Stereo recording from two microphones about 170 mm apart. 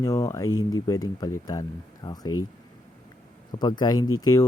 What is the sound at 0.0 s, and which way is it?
Speech, 20° left (ahead or behind).